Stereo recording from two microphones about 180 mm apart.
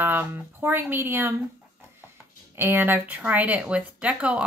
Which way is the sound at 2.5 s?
10° right (ahead or behind).